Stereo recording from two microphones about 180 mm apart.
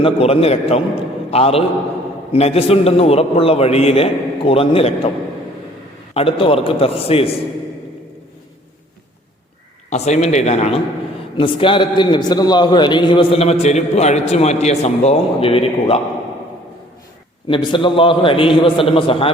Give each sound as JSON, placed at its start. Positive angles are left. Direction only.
{"t": 0.0, "sound": "a man's voice", "side_deg": 30}
{"t": 6.1, "sound": "a man's voice", "side_deg": 30}
{"t": 9.9, "sound": "a man's voice", "side_deg": 40}
{"t": 17.5, "sound": "a man's voice", "side_deg": 30}